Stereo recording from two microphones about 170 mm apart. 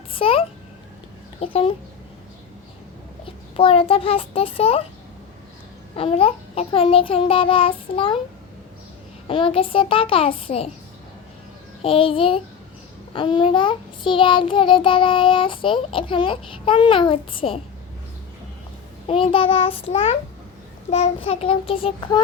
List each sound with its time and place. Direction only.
0.1 s a sound: 30° left (ahead or behind)
3.2 s a child's voice: 30° left (ahead or behind)
6.0 s child singing: 35° left (ahead or behind)
9.2 s child singing: 30° left (ahead or behind)
11.8 s child singing: 30° left (ahead or behind)
19.0 s child singing: 30° left (ahead or behind)